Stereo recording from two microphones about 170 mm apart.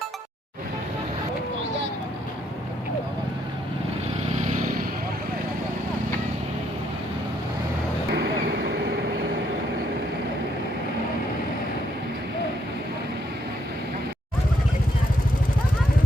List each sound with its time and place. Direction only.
8.1 s vehicle: 75° right (ahead or behind)